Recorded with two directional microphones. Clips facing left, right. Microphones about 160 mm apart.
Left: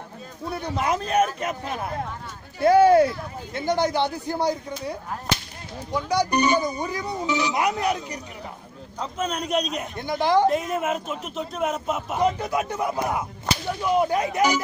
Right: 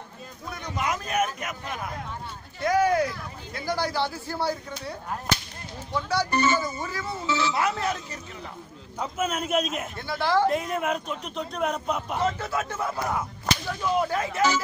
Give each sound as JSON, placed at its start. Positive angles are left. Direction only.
{"t": 0.5, "sound": "a man's voice", "side_deg": 30}
{"t": 9.0, "sound": "a man's voice", "side_deg": -5}
{"t": 9.9, "sound": "speech", "side_deg": 20}
{"t": 10.5, "sound": "a man's voice", "side_deg": 0}
{"t": 12.2, "sound": "speech", "side_deg": 15}